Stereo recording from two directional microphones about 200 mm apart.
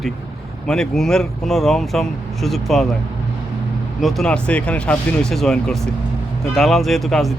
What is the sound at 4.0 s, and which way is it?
Speech, centre (ahead or behind).